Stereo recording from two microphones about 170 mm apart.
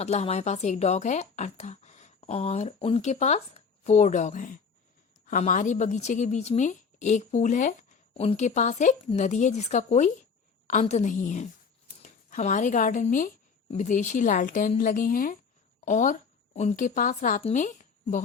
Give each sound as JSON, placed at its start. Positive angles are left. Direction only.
{"t": 0.0, "sound": "a woman's voice", "side_deg": 40}